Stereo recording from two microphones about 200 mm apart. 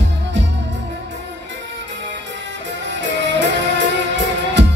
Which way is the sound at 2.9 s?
60° right (ahead or behind).